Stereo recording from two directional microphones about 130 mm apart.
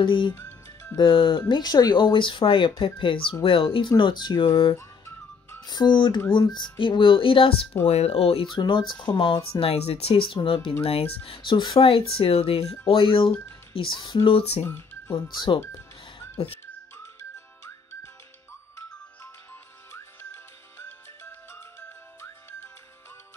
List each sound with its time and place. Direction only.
0.0 s speech: 40° left (ahead or behind)
0.3 s music: 15° left (ahead or behind)
0.9 s speech: 40° left (ahead or behind)
4.7 s whistling: 25° left (ahead or behind)
6.3 s speech: 35° left (ahead or behind)
7.8 s speech: 55° left (ahead or behind)
8.5 s speech: 35° left (ahead or behind)
14.6 s speech: 20° left (ahead or behind)
15.3 s speech: 35° left (ahead or behind)
20.8 s music: 20° left (ahead or behind)